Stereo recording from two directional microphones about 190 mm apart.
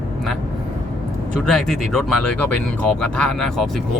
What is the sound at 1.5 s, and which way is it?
Speech, centre (ahead or behind).